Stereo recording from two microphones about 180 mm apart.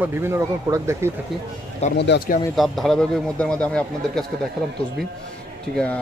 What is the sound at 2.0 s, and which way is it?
Speech, 70° left (ahead or behind).